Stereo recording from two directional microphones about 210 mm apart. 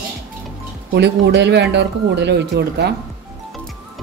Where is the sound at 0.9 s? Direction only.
55° right (ahead or behind).